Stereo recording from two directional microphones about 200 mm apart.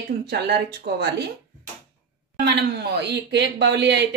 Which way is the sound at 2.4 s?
60° right (ahead or behind).